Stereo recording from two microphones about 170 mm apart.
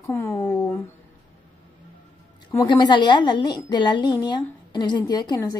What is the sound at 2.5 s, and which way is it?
A woman's voice, 25° left (ahead or behind).